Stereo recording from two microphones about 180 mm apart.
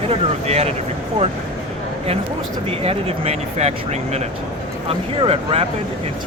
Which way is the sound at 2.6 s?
35° right (ahead or behind).